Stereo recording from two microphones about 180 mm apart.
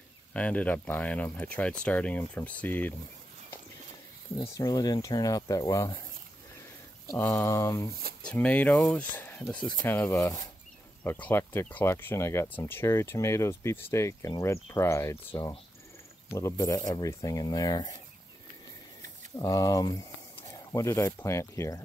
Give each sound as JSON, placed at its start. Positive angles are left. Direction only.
{"t": 0.3, "sound": "speech", "side_deg": 10}
{"t": 4.4, "sound": "speech", "side_deg": 20}
{"t": 7.1, "sound": "speech", "side_deg": 15}
{"t": 8.2, "sound": "speech", "side_deg": 5}
{"t": 19.3, "sound": "speech", "side_deg": 20}